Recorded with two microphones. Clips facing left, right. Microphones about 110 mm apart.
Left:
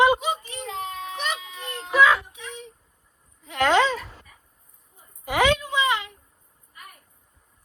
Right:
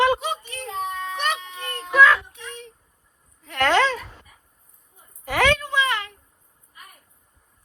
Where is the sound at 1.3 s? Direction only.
5° left (ahead or behind).